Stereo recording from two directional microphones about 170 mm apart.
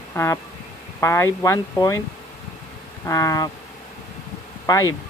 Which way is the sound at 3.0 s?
20° left (ahead or behind).